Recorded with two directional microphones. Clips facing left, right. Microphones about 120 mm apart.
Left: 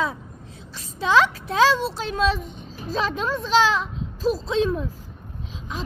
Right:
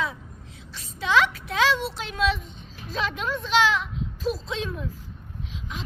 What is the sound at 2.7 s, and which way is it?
A woman's voice, 35° left (ahead or behind).